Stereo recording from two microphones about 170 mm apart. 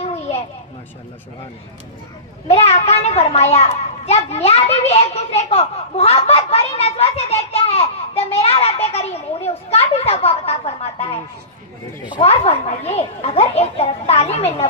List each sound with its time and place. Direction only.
2.5 s a child's voice: 40° left (ahead or behind)